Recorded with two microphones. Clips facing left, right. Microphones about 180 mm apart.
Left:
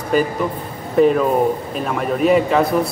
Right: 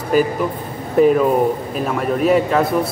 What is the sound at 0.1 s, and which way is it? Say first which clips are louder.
A man's voice: right 1 dB; 5° right (ahead or behind).